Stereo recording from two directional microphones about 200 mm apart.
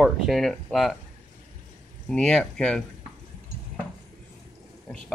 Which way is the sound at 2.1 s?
5° left (ahead or behind).